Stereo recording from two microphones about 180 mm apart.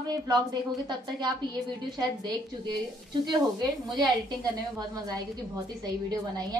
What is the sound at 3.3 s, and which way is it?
A woman's voice, 25° right (ahead or behind).